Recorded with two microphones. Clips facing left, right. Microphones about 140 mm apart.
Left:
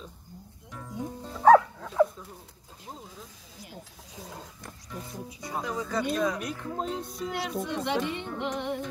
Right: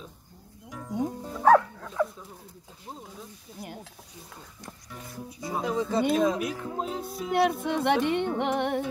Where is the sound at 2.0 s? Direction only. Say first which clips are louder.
Left 5 dB; 25° left (ahead or behind).